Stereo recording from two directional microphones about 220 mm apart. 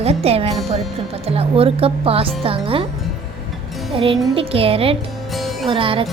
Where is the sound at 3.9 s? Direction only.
25° right (ahead or behind).